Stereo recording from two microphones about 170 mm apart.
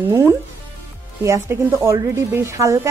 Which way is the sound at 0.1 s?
15° right (ahead or behind).